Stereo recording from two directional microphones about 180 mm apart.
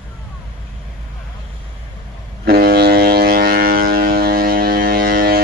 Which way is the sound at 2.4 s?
60° right (ahead or behind).